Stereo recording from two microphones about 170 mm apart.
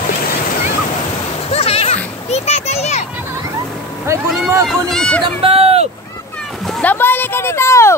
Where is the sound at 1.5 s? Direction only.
35° left (ahead or behind).